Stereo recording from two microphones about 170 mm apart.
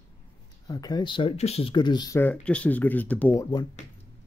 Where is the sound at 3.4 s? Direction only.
25° left (ahead or behind).